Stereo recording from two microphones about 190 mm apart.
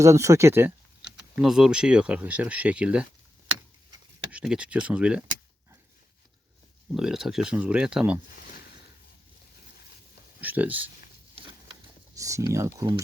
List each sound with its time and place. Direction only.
0.0 s speech: 15° right (ahead or behind)
4.3 s speech: 5° right (ahead or behind)
6.9 s speech: centre (ahead or behind)
10.4 s speech: 10° right (ahead or behind)
12.1 s speech: 15° right (ahead or behind)